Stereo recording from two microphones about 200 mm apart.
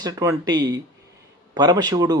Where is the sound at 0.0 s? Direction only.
20° right (ahead or behind).